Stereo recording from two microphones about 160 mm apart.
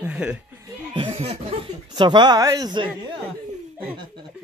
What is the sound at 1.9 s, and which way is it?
Speech, 30° right (ahead or behind).